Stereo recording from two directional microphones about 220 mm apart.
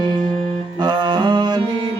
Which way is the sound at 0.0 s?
20° right (ahead or behind).